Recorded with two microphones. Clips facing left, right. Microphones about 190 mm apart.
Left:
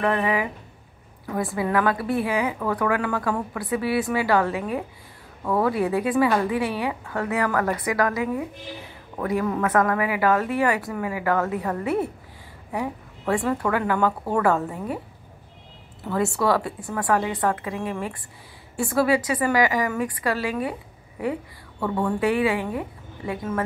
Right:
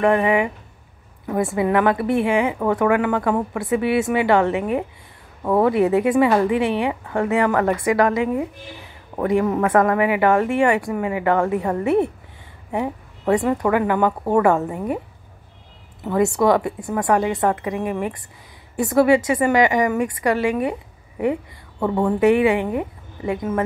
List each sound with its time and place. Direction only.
0.0 s a woman's voice: 25° right (ahead or behind)
16.0 s a woman's voice: 20° right (ahead or behind)